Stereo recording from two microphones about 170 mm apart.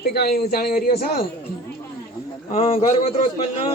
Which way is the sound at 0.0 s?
70° left (ahead or behind).